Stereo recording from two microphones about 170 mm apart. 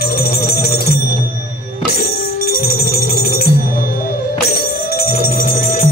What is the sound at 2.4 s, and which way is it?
Music, 65° left (ahead or behind).